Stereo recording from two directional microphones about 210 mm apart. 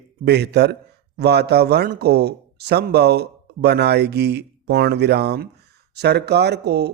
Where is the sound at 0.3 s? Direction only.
50° right (ahead or behind).